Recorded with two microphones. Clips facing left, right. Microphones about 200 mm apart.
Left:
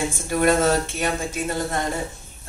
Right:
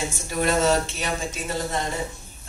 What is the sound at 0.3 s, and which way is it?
Speech, 55° left (ahead or behind).